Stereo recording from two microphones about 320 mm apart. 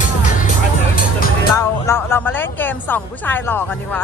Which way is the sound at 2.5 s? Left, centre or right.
Centre.